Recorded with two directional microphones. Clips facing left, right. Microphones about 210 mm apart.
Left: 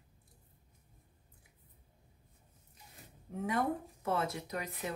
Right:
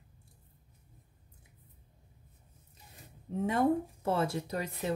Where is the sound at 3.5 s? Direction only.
30° right (ahead or behind).